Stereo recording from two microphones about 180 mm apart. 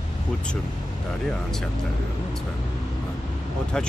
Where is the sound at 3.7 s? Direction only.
5° left (ahead or behind).